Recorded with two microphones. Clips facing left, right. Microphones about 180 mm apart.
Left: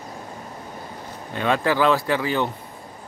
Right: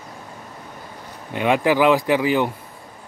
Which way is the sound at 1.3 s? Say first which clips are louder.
Right 3 dB; 15° right (ahead or behind).